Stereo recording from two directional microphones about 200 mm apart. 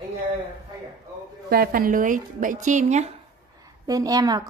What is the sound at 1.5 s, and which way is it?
A woman's voice, 50° right (ahead or behind).